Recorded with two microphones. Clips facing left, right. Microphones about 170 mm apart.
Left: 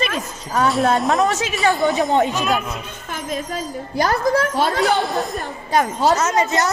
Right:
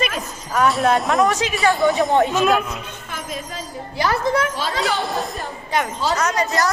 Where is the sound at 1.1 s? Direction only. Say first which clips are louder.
Right 1 dB; 25° left (ahead or behind).